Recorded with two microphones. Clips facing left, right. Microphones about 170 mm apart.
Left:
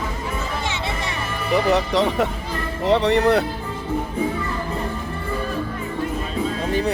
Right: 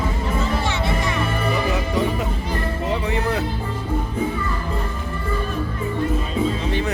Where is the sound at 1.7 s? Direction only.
75° left (ahead or behind).